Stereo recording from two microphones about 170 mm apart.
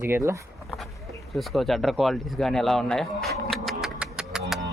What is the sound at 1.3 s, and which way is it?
Speech, centre (ahead or behind).